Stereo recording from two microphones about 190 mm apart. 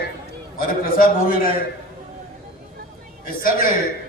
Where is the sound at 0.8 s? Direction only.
50° left (ahead or behind).